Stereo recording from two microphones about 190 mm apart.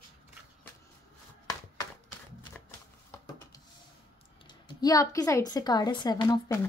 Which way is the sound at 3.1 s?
20° left (ahead or behind).